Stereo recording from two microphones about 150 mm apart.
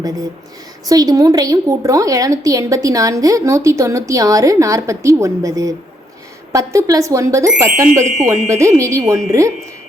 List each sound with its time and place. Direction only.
0.9 s a woman's voice: 25° right (ahead or behind)